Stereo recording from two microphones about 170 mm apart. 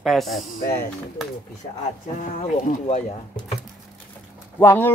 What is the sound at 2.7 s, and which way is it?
Speech, 45° left (ahead or behind).